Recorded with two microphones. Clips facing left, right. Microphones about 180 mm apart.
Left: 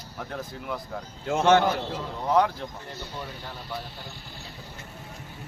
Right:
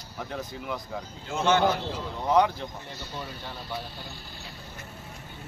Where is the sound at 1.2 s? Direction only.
75° left (ahead or behind).